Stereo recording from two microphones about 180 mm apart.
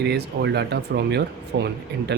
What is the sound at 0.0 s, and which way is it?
A man's voice, 65° right (ahead or behind).